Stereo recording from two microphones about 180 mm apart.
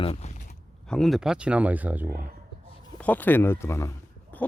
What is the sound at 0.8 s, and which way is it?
Speech, 5° left (ahead or behind).